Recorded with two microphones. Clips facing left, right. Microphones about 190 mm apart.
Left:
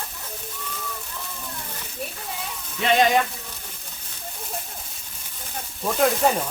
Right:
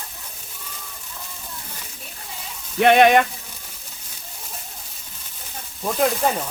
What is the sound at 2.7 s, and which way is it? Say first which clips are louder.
Sizzle: right 6 dB; 65° right (ahead or behind).